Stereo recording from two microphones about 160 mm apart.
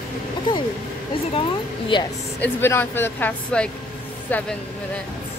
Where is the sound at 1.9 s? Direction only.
30° left (ahead or behind).